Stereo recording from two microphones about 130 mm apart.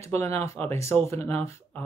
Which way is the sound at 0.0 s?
20° left (ahead or behind).